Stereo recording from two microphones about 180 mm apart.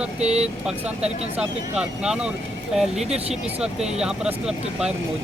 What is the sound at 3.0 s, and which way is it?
Speech, 35° right (ahead or behind).